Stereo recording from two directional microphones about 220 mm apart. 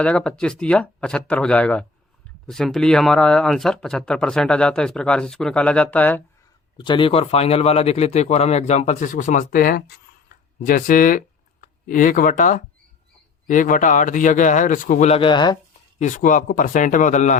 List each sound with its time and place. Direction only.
0.0 s speech: 5° left (ahead or behind)
6.7 s speech: 20° left (ahead or behind)
16.0 s speech: 35° left (ahead or behind)